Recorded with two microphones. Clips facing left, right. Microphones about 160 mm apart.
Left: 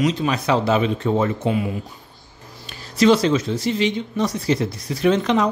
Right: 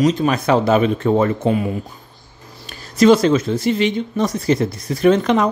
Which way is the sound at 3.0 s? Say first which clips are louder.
Right 4 dB; 50° right (ahead or behind).